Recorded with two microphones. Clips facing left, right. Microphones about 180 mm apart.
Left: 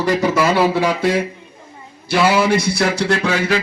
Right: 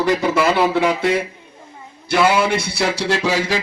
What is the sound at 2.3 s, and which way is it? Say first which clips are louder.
Speech: left 3 dB; 5° left (ahead or behind).